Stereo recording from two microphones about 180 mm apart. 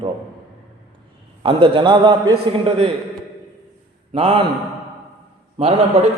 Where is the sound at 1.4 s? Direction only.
30° right (ahead or behind).